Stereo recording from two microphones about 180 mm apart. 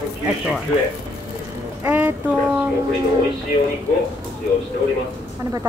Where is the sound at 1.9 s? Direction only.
10° right (ahead or behind).